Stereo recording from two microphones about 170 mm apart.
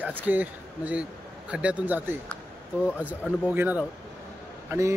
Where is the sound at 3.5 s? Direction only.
10° right (ahead or behind).